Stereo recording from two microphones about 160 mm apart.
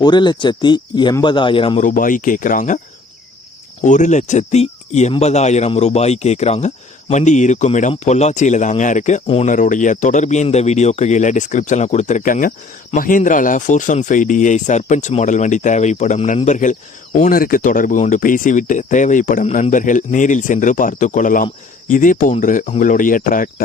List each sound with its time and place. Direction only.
0.0 s a man's voice: 30° left (ahead or behind)
1.8 s speech: 55° left (ahead or behind)
3.8 s speech: 50° left (ahead or behind)